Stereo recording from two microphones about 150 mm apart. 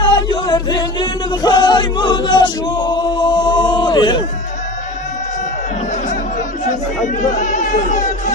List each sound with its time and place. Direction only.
0.0 s music: 30° left (ahead or behind)
7.2 s music: 55° left (ahead or behind)